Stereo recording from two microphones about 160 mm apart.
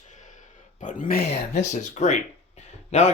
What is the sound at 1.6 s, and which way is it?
Speech, 45° left (ahead or behind).